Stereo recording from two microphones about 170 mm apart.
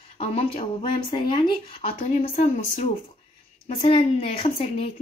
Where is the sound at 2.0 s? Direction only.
45° left (ahead or behind).